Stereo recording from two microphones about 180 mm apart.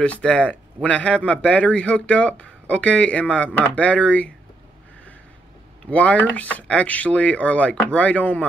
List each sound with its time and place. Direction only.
0.0 s speech: 5° left (ahead or behind)
5.9 s speech: 5° left (ahead or behind)